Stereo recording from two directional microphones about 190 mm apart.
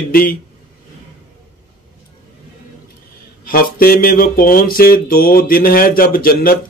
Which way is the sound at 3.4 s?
50° left (ahead or behind).